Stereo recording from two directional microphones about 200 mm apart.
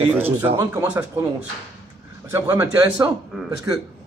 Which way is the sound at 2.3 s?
15° right (ahead or behind).